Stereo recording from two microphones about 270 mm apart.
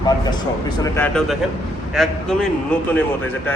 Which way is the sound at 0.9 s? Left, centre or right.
Centre.